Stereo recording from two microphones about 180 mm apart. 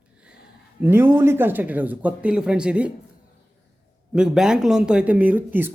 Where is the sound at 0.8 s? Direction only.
10° right (ahead or behind).